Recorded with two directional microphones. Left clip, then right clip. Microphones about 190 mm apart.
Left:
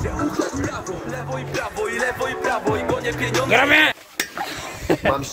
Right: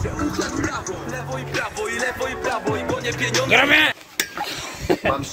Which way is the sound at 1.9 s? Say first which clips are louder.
Left 1 dB; 60° left (ahead or behind).